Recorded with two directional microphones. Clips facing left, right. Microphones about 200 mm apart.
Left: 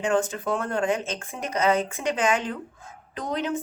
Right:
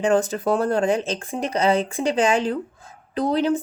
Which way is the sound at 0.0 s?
35° right (ahead or behind).